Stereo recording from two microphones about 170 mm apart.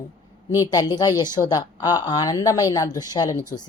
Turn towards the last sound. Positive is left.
turn(degrees=25)  # may be behind; listen again after turning